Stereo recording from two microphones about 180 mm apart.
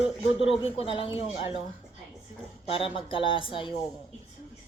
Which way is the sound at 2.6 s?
30° left (ahead or behind).